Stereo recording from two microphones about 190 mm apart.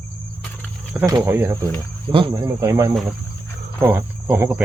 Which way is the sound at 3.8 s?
10° right (ahead or behind).